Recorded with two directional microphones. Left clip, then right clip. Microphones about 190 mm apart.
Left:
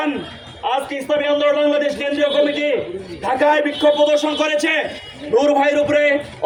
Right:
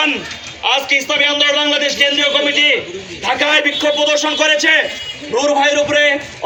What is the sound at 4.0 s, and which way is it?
A man's voice, 70° left (ahead or behind).